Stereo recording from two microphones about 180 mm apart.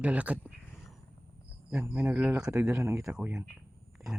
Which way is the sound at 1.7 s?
5° right (ahead or behind).